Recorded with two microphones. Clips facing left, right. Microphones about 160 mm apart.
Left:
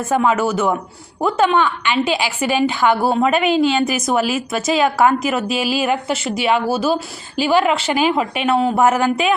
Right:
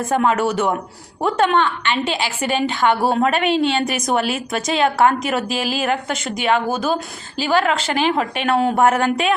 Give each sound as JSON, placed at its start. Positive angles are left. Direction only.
{"t": 0.1, "sound": "a man's voice", "side_deg": 5}
{"t": 5.5, "sound": "a woman's voice", "side_deg": -45}
{"t": 5.8, "sound": "a woman's voice", "side_deg": 5}